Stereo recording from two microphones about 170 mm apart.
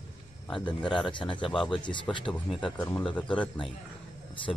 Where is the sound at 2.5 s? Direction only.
5° left (ahead or behind).